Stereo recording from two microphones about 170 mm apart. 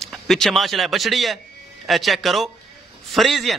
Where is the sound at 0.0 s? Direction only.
Centre (ahead or behind).